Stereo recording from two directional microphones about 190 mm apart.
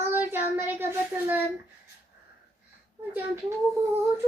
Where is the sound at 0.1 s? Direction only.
10° right (ahead or behind).